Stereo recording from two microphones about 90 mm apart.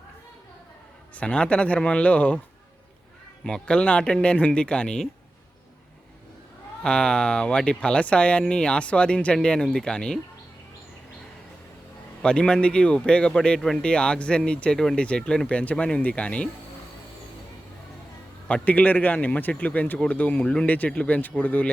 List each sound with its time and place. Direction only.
1.1 s speech: 15° left (ahead or behind)
3.4 s speech: 10° left (ahead or behind)
6.8 s speech: 10° left (ahead or behind)
12.2 s speech: 10° left (ahead or behind)
18.4 s speech: 15° left (ahead or behind)